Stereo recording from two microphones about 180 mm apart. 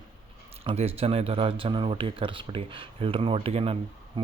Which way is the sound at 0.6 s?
35° right (ahead or behind).